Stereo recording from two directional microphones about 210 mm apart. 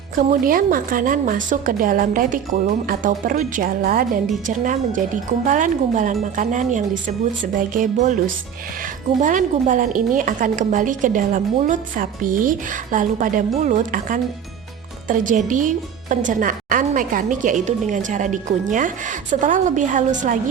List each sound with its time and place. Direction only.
0.2 s a woman's voice: 40° right (ahead or behind)
9.2 s a woman's voice: 40° right (ahead or behind)